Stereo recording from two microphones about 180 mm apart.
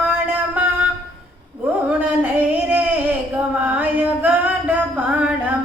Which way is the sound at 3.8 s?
10° right (ahead or behind).